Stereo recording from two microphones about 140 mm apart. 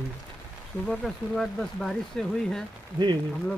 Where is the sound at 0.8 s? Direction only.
Centre (ahead or behind).